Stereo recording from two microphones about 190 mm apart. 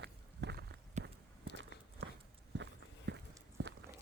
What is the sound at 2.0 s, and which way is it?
Walk, 80° right.